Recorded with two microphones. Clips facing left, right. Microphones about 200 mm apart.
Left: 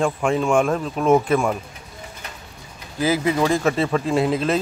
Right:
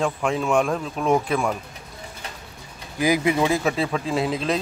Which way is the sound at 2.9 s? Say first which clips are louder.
Even; 15° right (ahead or behind).